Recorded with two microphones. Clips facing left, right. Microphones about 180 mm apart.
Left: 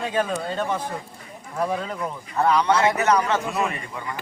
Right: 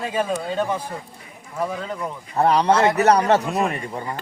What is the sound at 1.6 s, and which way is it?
Speech, centre (ahead or behind).